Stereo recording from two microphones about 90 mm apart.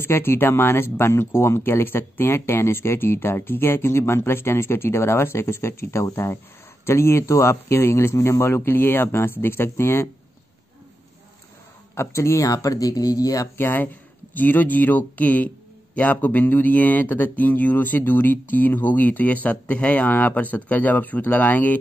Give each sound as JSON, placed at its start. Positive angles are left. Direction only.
{"t": 0.0, "sound": "speech", "side_deg": 25}
{"t": 11.9, "sound": "speech", "side_deg": 30}
{"t": 13.6, "sound": "speech", "side_deg": 25}